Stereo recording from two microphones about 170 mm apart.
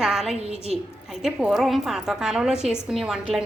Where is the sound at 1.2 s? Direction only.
Centre (ahead or behind).